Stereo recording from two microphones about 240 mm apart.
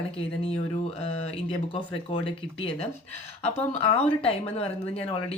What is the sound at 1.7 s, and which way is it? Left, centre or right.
Speech, left.